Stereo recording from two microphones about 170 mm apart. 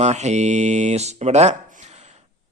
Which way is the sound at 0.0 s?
40° right (ahead or behind).